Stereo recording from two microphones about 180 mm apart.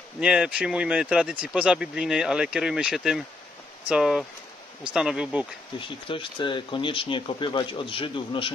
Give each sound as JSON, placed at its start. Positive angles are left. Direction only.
{"t": 0.2, "sound": "speech", "side_deg": -5}
{"t": 5.8, "sound": "speech", "side_deg": 30}